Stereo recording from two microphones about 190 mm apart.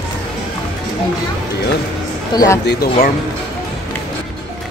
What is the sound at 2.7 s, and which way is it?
Speech, 55° left (ahead or behind).